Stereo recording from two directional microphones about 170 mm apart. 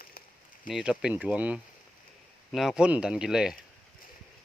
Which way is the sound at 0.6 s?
5° right (ahead or behind).